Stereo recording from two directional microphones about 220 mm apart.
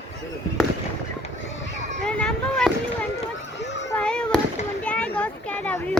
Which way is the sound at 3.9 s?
5° left (ahead or behind).